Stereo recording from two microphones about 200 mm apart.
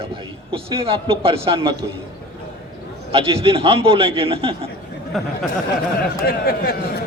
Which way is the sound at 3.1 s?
25° right (ahead or behind).